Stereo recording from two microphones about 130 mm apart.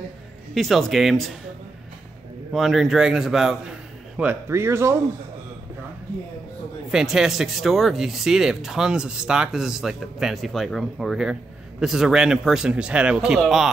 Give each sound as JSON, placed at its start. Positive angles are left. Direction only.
{"t": 0.6, "sound": "speech", "side_deg": 0}
{"t": 2.5, "sound": "speech", "side_deg": 0}
{"t": 4.2, "sound": "speech", "side_deg": -15}
{"t": 6.9, "sound": "speech", "side_deg": -5}